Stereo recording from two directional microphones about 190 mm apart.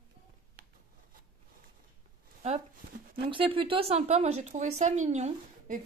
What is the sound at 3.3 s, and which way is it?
Speech, 25° right (ahead or behind).